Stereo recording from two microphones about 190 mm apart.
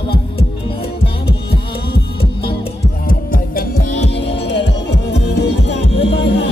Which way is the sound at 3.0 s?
50° left (ahead or behind).